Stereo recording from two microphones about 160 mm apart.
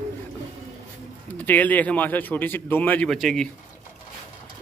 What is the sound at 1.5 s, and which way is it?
Speech, 10° left (ahead or behind).